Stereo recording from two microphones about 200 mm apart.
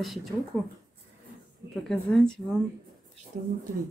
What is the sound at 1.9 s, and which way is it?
Speech, 5° left (ahead or behind).